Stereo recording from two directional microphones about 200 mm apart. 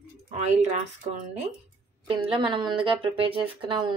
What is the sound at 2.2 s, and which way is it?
Speech, 25° right (ahead or behind).